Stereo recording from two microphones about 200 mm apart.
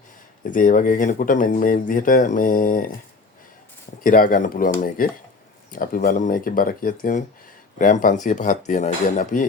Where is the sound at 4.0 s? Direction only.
45° left (ahead or behind).